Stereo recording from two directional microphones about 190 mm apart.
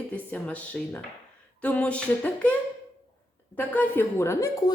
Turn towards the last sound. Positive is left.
turn(degrees=15)  # may be behind; listen again after turning